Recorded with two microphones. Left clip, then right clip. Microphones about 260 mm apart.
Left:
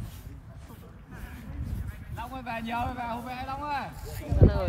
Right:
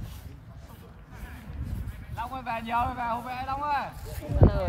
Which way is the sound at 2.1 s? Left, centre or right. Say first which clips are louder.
Right 3 dB; centre.